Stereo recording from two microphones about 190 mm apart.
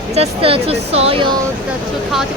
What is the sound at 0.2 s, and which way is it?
Speech, 30° right (ahead or behind).